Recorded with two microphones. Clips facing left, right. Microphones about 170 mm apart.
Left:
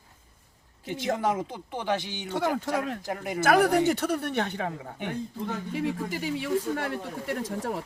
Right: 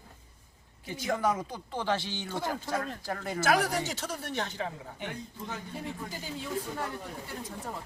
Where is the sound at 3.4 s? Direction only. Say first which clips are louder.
Left 7 dB; 55° left (ahead or behind).